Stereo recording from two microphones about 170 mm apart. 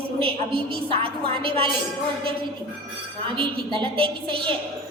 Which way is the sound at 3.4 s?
30° right (ahead or behind).